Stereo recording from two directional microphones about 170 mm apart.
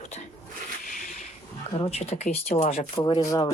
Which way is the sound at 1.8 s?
40° left (ahead or behind).